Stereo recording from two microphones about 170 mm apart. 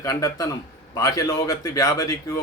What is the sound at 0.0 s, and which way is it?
Speech, 20° left (ahead or behind).